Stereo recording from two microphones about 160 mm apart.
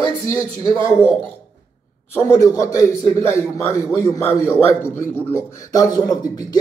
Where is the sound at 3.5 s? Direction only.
Centre (ahead or behind).